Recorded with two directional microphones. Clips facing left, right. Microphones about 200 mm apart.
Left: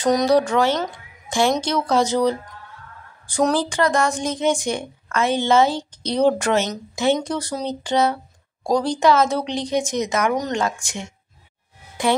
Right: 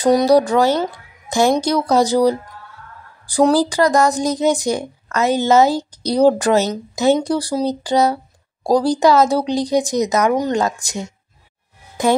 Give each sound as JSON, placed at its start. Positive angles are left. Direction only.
{"t": 0.3, "sound": "a woman's voice", "side_deg": -35}
{"t": 0.9, "sound": "music", "side_deg": -40}
{"t": 1.6, "sound": "a woman's voice", "side_deg": -40}